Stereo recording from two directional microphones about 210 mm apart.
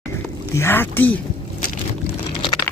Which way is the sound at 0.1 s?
10° left (ahead or behind).